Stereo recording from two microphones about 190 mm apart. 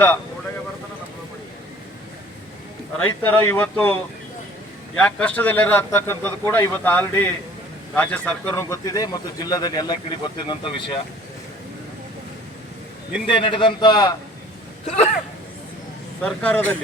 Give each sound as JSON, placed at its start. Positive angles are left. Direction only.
{"t": 3.0, "sound": "speech", "side_deg": 10}
{"t": 4.9, "sound": "speech", "side_deg": 5}
{"t": 13.2, "sound": "speech", "side_deg": 25}
{"t": 16.2, "sound": "speech", "side_deg": 5}